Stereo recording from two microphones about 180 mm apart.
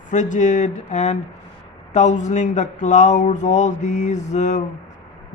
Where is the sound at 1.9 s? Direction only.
40° left (ahead or behind).